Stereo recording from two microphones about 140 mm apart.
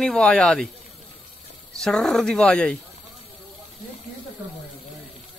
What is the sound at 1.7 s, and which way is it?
A woman's voice, 5° left (ahead or behind).